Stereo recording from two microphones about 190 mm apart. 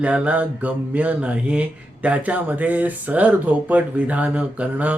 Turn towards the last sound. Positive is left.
turn(degrees=-5)  # may be behind; listen again after turning